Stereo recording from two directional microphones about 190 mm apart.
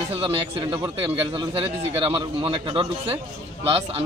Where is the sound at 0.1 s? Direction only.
25° right (ahead or behind).